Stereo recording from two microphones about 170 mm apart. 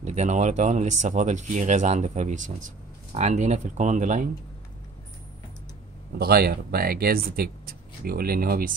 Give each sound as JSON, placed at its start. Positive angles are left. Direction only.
{"t": 0.0, "sound": "speech", "side_deg": -40}
{"t": 6.1, "sound": "speech", "side_deg": -65}